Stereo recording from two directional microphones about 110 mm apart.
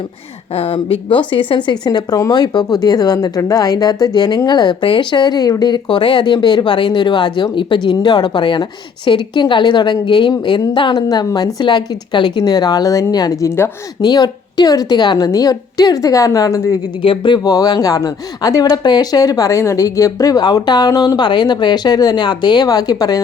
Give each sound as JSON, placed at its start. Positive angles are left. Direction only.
{"t": 0.5, "sound": "a woman's voice", "side_deg": 60}
{"t": 17.0, "sound": "speech", "side_deg": 50}